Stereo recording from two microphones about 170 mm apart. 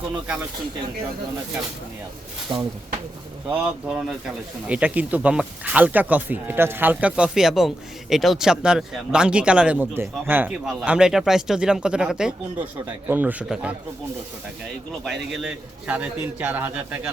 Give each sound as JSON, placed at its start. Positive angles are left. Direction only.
{"t": 2.5, "sound": "speech", "side_deg": -25}
{"t": 3.5, "sound": "speech", "side_deg": -5}
{"t": 15.0, "sound": "speech", "side_deg": 0}